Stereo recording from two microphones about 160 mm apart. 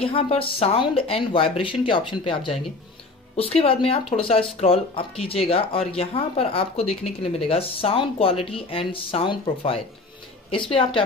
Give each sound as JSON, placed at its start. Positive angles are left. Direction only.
{"t": 0.1, "sound": "speech", "side_deg": 35}